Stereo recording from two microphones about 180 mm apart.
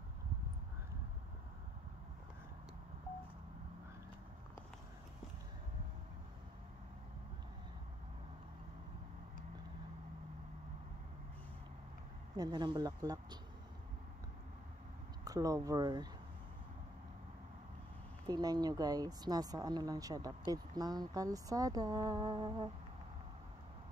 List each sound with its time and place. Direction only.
12.4 s speech: 20° right (ahead or behind)
15.2 s speech: 20° right (ahead or behind)
18.2 s speech: 20° right (ahead or behind)